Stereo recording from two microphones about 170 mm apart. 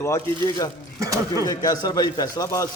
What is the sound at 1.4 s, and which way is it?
A man's voice, 20° left (ahead or behind).